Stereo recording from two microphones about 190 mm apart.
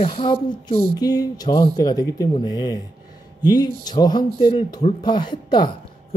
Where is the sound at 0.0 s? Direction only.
30° left (ahead or behind).